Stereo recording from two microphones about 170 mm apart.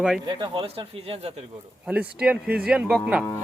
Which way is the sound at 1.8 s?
10° right (ahead or behind).